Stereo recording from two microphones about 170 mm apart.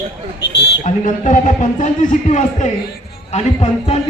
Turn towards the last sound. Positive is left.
turn(degrees=40)  # may be behind; listen again after turning